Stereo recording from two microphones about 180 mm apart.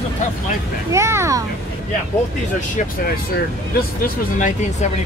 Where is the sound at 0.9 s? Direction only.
15° right (ahead or behind).